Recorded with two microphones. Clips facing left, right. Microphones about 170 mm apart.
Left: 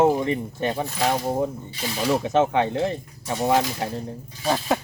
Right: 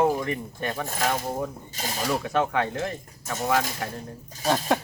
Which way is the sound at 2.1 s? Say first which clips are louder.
Left 5 dB; 20° left (ahead or behind).